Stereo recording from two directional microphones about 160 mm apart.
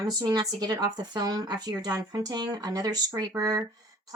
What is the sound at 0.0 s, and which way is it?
Speech, 25° right (ahead or behind).